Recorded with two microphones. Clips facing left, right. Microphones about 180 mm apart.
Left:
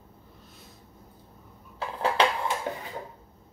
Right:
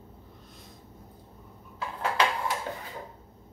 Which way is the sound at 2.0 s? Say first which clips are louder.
Left 3 dB; 30° left (ahead or behind).